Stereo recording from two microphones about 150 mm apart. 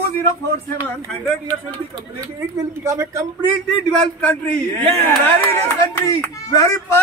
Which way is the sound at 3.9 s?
10° left (ahead or behind).